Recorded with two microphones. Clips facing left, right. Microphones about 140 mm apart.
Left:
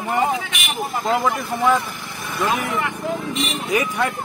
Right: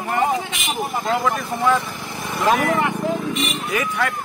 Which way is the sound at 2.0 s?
30° right (ahead or behind).